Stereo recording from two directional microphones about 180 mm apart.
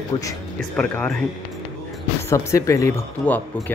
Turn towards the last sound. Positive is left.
turn(degrees=15)  # may be behind; listen again after turning